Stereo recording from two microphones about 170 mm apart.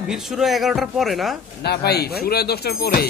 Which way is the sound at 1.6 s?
70° left (ahead or behind).